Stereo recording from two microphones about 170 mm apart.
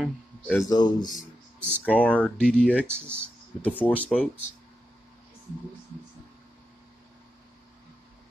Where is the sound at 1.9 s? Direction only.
10° left (ahead or behind).